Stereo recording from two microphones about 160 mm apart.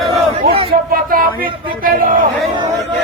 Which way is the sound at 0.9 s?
60° right (ahead or behind).